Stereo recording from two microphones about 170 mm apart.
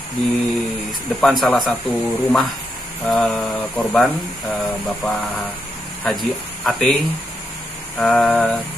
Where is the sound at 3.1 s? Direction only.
5° left (ahead or behind).